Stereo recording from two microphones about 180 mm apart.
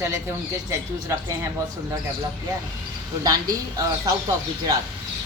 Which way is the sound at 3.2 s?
20° right (ahead or behind).